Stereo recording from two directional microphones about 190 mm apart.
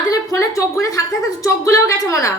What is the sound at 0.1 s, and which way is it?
A woman's voice, 15° left (ahead or behind).